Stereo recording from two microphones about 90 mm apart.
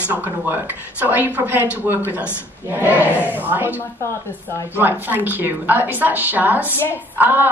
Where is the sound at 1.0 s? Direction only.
20° right (ahead or behind).